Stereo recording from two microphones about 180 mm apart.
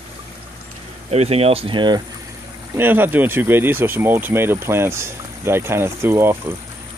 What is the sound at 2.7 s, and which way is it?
Speech, 10° right (ahead or behind).